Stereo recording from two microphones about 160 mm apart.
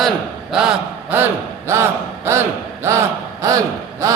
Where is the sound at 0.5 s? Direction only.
5° right (ahead or behind).